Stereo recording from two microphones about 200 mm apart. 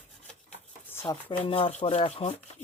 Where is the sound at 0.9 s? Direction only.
10° left (ahead or behind).